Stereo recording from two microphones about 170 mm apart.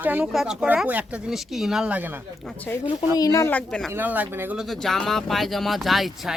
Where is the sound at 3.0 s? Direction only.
20° left (ahead or behind); by 3.9 s 5° left (ahead or behind).